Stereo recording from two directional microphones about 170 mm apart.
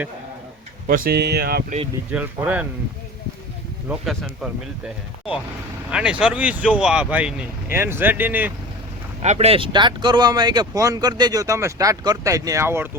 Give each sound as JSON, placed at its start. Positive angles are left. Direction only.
{"t": 0.9, "sound": "speech", "side_deg": -60}
{"t": 2.0, "sound": "speech", "side_deg": -10}
{"t": 3.8, "sound": "speech", "side_deg": 0}
{"t": 5.9, "sound": "speech", "side_deg": -5}
{"t": 9.2, "sound": "speech", "side_deg": -40}